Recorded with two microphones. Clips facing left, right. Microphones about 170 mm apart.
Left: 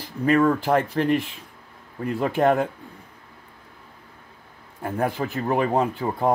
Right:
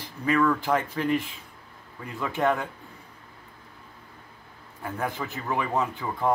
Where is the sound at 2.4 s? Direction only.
50° left (ahead or behind).